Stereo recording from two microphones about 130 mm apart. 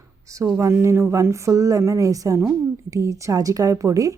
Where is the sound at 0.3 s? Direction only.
25° right (ahead or behind).